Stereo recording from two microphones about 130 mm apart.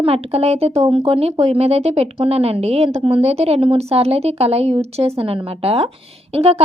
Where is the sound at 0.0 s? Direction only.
50° right (ahead or behind).